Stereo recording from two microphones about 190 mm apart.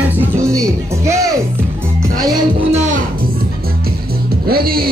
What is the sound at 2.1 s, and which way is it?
Music, 20° right (ahead or behind).